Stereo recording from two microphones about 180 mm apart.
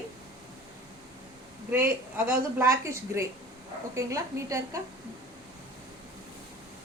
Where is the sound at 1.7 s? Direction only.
10° right (ahead or behind).